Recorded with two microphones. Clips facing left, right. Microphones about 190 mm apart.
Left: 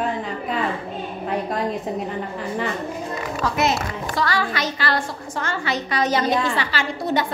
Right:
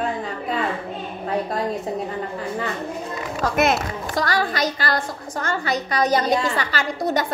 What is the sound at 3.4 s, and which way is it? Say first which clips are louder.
A woman's voice: right 2 dB; 55° right (ahead or behind).